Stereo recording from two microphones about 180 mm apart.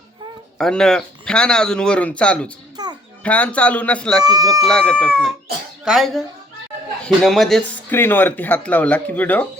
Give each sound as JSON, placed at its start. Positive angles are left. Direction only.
{"t": 0.6, "sound": "speech", "side_deg": 5}
{"t": 2.7, "sound": "music", "side_deg": -25}
{"t": 3.2, "sound": "speech", "side_deg": 10}
{"t": 4.2, "sound": "speech", "side_deg": -20}
{"t": 4.6, "sound": "speech", "side_deg": 5}